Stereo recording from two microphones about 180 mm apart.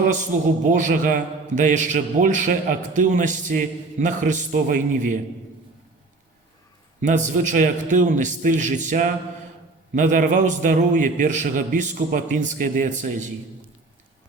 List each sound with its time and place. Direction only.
0.7 s a man's voice: 45° right (ahead or behind)
7.0 s a man's voice: 45° right (ahead or behind)